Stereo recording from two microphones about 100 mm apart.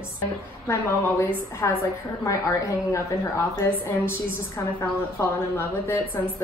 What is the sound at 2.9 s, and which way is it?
Speech, 30° left (ahead or behind).